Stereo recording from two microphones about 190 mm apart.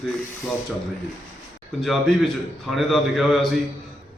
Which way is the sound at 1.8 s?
Centre (ahead or behind).